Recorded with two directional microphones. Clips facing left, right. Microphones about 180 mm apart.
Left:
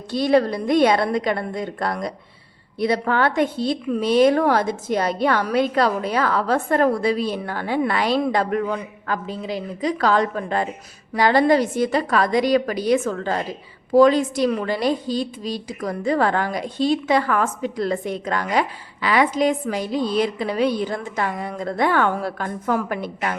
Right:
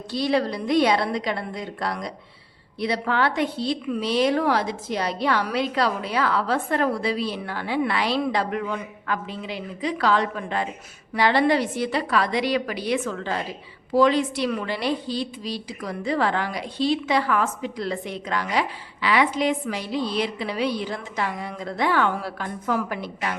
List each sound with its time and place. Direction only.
0.1 s a woman's voice: 50° left (ahead or behind)